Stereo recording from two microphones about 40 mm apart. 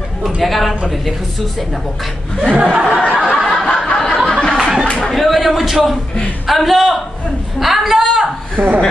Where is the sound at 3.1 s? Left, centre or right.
Centre.